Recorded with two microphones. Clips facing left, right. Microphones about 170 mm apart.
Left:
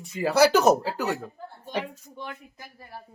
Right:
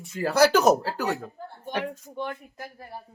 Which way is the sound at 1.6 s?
55° right (ahead or behind).